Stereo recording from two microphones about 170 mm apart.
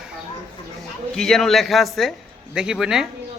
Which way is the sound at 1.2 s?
Centre (ahead or behind).